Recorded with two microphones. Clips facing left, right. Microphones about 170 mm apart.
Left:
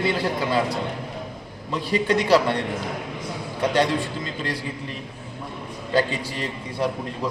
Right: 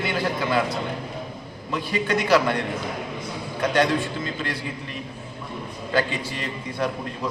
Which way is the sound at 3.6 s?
30° left (ahead or behind).